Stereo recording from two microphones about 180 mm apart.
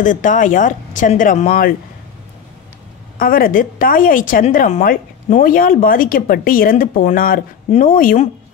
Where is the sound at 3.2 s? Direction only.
55° left (ahead or behind).